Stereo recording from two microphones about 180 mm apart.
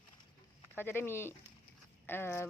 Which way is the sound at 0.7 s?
10° left (ahead or behind).